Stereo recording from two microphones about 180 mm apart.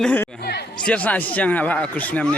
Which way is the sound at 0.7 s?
5° left (ahead or behind).